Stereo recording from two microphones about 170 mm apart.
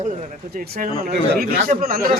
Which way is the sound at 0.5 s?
55° right (ahead or behind).